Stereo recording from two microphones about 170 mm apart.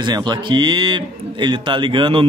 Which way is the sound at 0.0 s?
25° right (ahead or behind).